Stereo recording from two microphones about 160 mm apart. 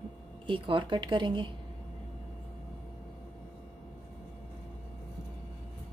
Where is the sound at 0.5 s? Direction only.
30° right (ahead or behind).